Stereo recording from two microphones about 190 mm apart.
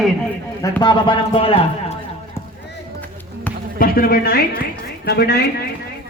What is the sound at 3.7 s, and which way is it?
Speech, 50° left (ahead or behind).